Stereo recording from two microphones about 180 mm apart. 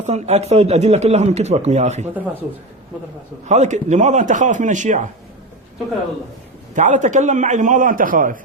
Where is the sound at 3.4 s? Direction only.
40° right (ahead or behind).